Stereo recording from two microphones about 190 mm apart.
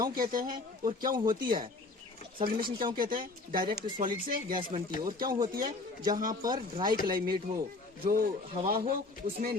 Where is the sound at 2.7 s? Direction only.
25° right (ahead or behind).